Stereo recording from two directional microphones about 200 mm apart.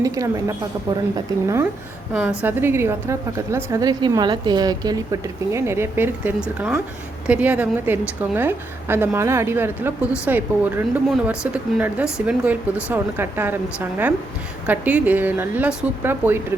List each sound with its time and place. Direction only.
0.0 s a woman's voice: 15° right (ahead or behind)